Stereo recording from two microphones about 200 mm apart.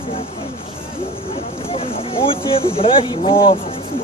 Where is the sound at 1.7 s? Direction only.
30° left (ahead or behind).